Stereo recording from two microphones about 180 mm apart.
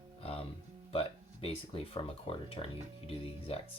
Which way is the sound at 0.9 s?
35° left (ahead or behind).